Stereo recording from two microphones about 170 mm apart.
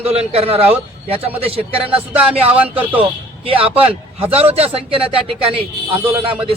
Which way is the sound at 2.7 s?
10° right (ahead or behind).